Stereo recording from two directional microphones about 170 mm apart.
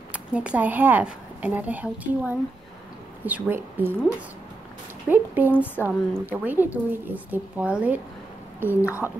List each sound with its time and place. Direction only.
0.1 s speech: 5° right (ahead or behind)
5.1 s speech: 10° right (ahead or behind)
8.6 s speech: 15° left (ahead or behind)